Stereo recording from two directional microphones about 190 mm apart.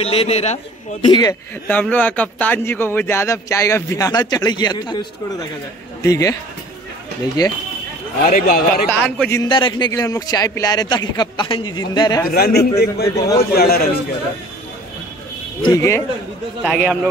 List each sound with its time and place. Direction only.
0.0 s a man's voice: 30° left (ahead or behind)
1.0 s a man's voice: 25° left (ahead or behind)
1.7 s speech: 10° left (ahead or behind)
7.4 s a man's voice: 20° left (ahead or behind)
8.3 s speech: 50° left (ahead or behind)
8.9 s speech: 10° left (ahead or behind)
9.4 s a man's voice: 25° left (ahead or behind)
12.3 s a man's voice: 55° left (ahead or behind)
13.0 s speech: 20° left (ahead or behind)
13.4 s a man's voice: 55° left (ahead or behind)
15.6 s speech: 15° left (ahead or behind)
16.6 s a man's voice: 5° right (ahead or behind)